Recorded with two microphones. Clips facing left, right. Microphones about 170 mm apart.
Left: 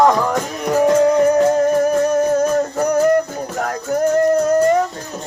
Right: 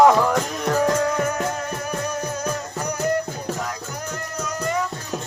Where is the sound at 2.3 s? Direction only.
50° left (ahead or behind).